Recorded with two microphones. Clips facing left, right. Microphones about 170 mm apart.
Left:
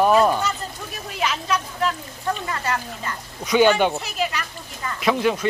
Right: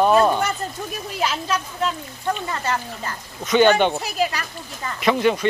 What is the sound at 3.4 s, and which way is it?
Speech, 5° left (ahead or behind).